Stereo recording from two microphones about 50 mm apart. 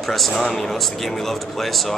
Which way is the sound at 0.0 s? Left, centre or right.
Centre.